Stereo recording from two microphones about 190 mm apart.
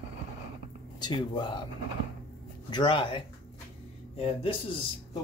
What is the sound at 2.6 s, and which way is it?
Speech, 25° left (ahead or behind).